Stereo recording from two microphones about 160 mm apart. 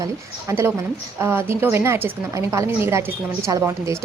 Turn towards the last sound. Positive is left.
turn(degrees=-15)  # may be behind; listen again after turning